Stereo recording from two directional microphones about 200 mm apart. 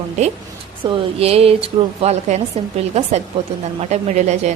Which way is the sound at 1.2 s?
30° right (ahead or behind).